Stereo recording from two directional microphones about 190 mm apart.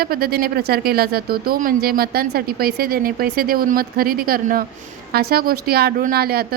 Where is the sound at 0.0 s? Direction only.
55° right (ahead or behind).